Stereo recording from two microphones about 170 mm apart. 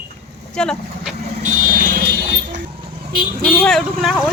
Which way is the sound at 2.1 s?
75° right (ahead or behind).